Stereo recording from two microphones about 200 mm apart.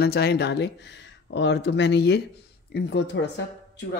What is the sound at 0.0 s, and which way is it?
Speech, 55° left (ahead or behind).